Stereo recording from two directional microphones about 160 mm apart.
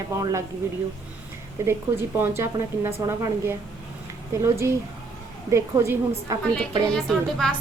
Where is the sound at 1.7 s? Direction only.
15° right (ahead or behind).